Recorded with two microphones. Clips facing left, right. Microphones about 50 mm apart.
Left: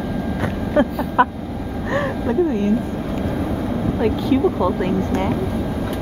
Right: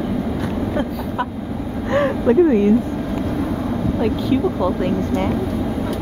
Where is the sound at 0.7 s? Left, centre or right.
Left.